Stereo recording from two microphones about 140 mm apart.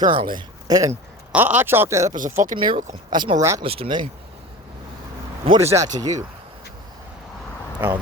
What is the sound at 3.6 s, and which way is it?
Speech, 45° right (ahead or behind).